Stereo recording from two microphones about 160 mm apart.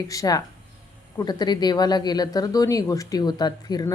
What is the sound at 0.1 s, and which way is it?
Speech, 20° left (ahead or behind).